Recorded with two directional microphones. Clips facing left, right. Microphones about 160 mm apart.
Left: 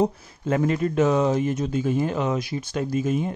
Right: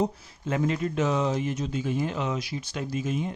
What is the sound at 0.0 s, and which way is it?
Speech, 50° left (ahead or behind).